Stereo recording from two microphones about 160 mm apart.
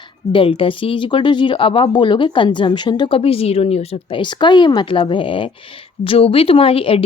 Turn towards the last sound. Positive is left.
turn(degrees=35)  # may be behind; listen again after turning